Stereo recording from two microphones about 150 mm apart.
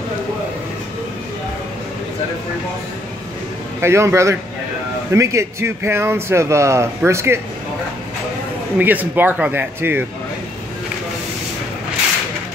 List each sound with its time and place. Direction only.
3.8 s a man's voice: 20° right (ahead or behind)
8.7 s speech: 10° right (ahead or behind)